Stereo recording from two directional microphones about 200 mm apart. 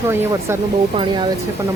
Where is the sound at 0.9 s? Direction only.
25° right (ahead or behind).